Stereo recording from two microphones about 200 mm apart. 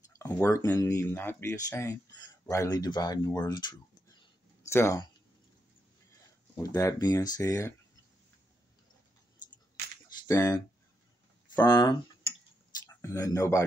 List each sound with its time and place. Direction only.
0.2 s speech: 15° left (ahead or behind)
6.5 s speech: 15° left (ahead or behind)
10.2 s speech: 15° left (ahead or behind)
11.5 s tick-tock: 20° left (ahead or behind)
12.8 s speech: 15° left (ahead or behind)